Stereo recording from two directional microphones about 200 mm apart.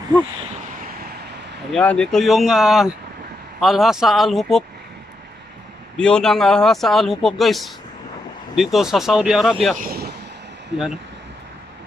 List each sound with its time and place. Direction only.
1.7 s speech: 5° left (ahead or behind)
5.9 s speech: 5° left (ahead or behind)
9.8 s speech: 50° right (ahead or behind)